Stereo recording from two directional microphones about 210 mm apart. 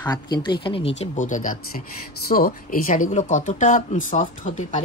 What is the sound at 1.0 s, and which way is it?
Speech, 35° left (ahead or behind).